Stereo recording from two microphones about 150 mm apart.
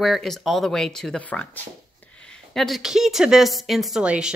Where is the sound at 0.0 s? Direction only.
Centre (ahead or behind).